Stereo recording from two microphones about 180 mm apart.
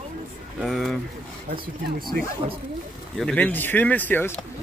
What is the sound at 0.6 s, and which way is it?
Speech, centre (ahead or behind).